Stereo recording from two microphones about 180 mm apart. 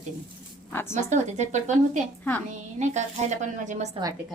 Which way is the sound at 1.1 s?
40° right (ahead or behind).